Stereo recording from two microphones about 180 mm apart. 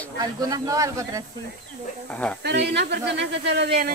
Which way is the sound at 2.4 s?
70° right (ahead or behind).